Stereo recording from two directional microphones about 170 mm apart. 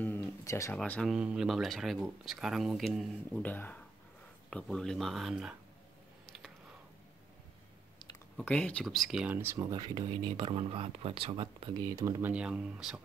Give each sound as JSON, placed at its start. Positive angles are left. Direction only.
{"t": 0.0, "sound": "a sound", "side_deg": 10}
{"t": 0.7, "sound": "speech", "side_deg": 5}
{"t": 8.4, "sound": "speech", "side_deg": 10}
{"t": 11.9, "sound": "speech", "side_deg": -15}